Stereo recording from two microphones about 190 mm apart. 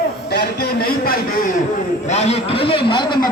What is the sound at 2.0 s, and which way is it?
A man's voice, 35° left (ahead or behind).